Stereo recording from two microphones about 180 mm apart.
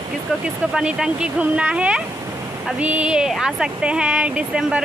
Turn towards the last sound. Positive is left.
turn(degrees=-5)  # may be behind; listen again after turning